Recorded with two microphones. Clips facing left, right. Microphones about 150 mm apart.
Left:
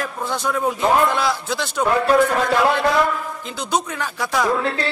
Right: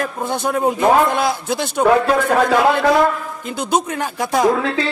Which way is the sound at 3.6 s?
50° right (ahead or behind).